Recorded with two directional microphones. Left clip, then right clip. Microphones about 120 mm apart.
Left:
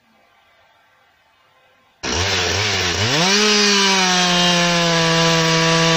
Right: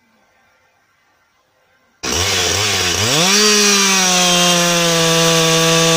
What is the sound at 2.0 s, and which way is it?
Chainsaw, 20° right (ahead or behind).